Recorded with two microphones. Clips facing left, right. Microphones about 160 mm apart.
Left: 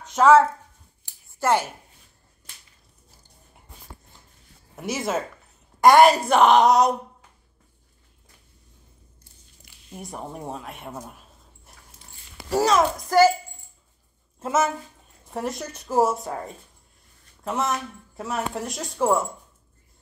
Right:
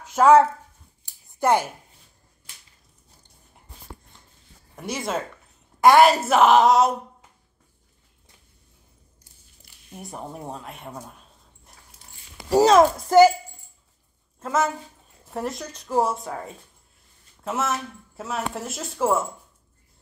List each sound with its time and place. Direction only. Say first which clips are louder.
0.0 s a sound: right 1 dB; 10° right (ahead or behind)
1.4 s a woman's voice: right 1 dB; 15° right (ahead or behind)
4.7 s speech: left 2 dB; 5° left (ahead or behind)
9.8 s speech: left 1 dB; centre (ahead or behind)
11.7 s dog: even; 5° left (ahead or behind)
12.4 s a child's voice: right 5 dB; 15° right (ahead or behind)
15.2 s speech: even; centre (ahead or behind)